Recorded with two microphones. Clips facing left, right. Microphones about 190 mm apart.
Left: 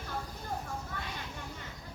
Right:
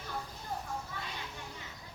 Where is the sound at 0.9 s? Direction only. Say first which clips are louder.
Left 2 dB; 50° left (ahead or behind).